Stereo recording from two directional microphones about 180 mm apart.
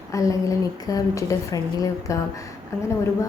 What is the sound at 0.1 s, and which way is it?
A woman's voice, 15° left (ahead or behind).